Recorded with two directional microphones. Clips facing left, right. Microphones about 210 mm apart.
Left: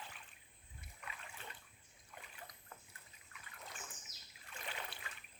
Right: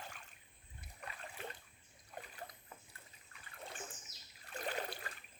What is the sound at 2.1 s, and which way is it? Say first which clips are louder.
Boat: right 7 dB; 40° right (ahead or behind).